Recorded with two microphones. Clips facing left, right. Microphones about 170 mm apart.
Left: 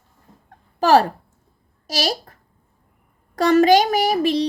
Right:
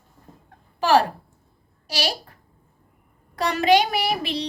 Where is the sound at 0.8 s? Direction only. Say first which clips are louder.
Left 4 dB; 40° left (ahead or behind).